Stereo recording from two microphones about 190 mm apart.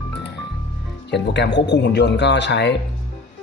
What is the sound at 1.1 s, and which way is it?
Speech, 65° left (ahead or behind).